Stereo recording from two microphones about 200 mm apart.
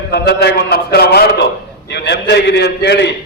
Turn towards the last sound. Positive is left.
turn(degrees=60)  # may be behind; listen again after turning